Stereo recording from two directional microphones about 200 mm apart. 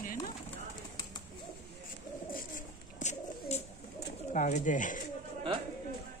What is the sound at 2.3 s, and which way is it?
Bird, 40° left (ahead or behind).